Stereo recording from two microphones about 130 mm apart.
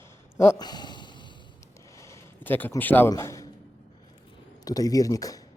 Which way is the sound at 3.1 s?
25° left (ahead or behind).